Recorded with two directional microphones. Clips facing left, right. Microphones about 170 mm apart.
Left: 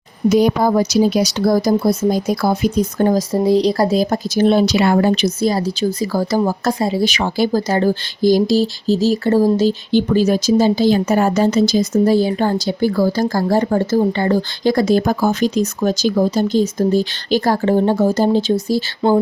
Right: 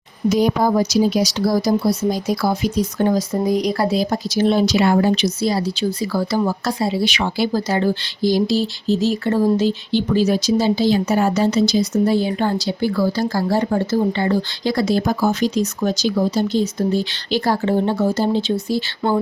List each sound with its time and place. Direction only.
0.3 s speech: 65° left (ahead or behind); by 3.2 s 45° left (ahead or behind)
3.4 s speech: 30° left (ahead or behind)